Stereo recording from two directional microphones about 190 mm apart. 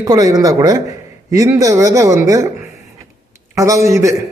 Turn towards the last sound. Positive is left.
turn(degrees=-15)  # may be behind; listen again after turning